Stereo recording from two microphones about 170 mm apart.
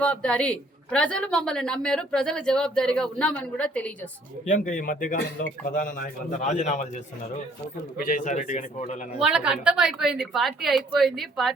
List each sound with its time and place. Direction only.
0.0 s a woman's voice: 5° left (ahead or behind)
4.4 s speech: 50° left (ahead or behind)
8.0 s speech: 50° left (ahead or behind)
9.1 s a woman's voice: 5° right (ahead or behind)